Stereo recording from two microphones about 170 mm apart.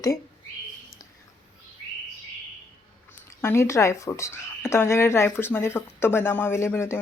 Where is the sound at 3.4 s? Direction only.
15° left (ahead or behind).